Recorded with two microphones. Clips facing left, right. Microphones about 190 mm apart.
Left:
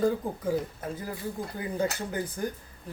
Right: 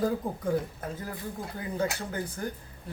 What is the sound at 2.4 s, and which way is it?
Speech, 20° left (ahead or behind).